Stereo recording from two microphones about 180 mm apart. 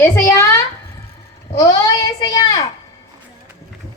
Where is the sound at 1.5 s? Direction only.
20° left (ahead or behind).